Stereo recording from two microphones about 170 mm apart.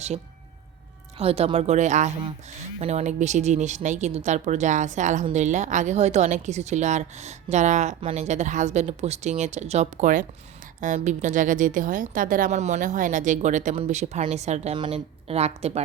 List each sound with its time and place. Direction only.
1.2 s a woman's voice: 35° right (ahead or behind)